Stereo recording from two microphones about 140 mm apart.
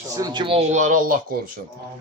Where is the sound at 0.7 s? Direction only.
65° right (ahead or behind); by 1.4 s 80° right.